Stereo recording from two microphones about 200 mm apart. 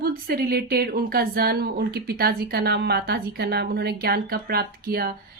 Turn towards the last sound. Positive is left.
turn(degrees=-50)  # may be behind; listen again after turning